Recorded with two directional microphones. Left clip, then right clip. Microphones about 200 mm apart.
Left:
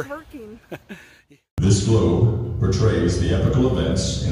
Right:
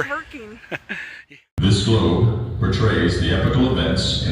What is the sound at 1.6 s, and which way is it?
Speech, centre (ahead or behind).